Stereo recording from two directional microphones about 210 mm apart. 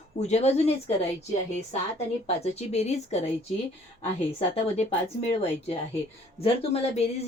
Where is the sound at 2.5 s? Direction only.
30° left (ahead or behind).